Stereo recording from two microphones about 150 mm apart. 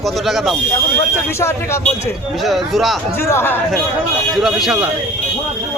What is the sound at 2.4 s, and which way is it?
Speech, centre (ahead or behind).